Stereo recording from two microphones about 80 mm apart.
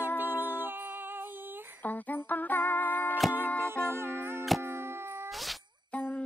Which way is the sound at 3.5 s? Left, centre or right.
Right.